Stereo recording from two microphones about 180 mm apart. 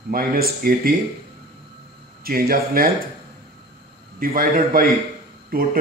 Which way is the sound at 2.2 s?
55° right (ahead or behind).